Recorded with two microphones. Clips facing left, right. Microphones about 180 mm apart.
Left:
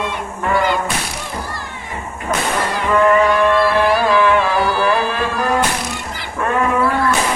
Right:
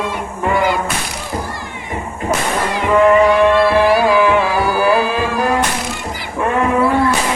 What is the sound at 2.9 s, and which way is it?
Music, 20° right (ahead or behind).